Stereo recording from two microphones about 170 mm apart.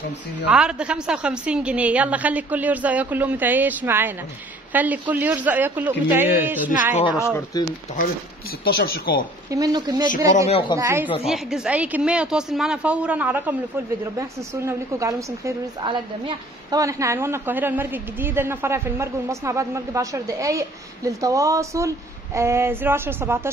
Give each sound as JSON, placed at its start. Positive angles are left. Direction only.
{"t": 0.5, "sound": "a woman's voice", "side_deg": -5}
{"t": 7.2, "sound": "speech", "side_deg": 15}
{"t": 7.9, "sound": "speech", "side_deg": 55}
{"t": 9.5, "sound": "a woman's voice", "side_deg": -20}
{"t": 11.2, "sound": "a woman's voice", "side_deg": -5}